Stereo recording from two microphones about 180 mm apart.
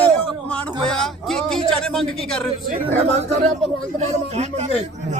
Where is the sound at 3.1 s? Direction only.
35° right (ahead or behind).